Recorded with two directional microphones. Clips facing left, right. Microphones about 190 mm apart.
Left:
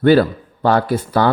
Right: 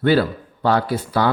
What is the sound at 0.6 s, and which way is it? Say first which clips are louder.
Speech: left 3 dB; 50° left (ahead or behind).